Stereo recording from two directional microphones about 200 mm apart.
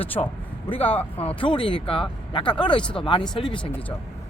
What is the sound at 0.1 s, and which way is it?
Speech, 25° left (ahead or behind).